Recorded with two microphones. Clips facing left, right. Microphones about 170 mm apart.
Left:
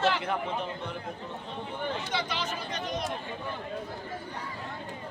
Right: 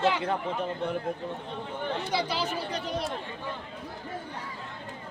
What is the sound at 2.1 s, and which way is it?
Speech, 35° right (ahead or behind).